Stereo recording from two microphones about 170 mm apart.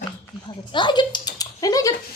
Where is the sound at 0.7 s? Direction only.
25° left (ahead or behind).